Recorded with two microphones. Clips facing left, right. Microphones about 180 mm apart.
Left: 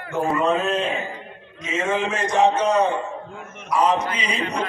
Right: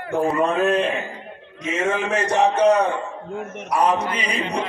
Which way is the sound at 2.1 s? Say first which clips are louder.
Left 1 dB; 65° right (ahead or behind).